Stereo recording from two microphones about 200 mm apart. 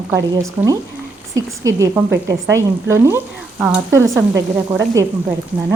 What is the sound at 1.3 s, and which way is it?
Speech, 15° right (ahead or behind).